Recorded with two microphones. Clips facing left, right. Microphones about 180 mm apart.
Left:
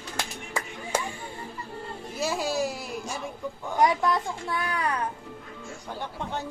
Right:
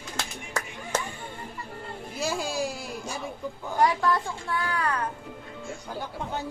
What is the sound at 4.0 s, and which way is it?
A child's voice, 15° left (ahead or behind).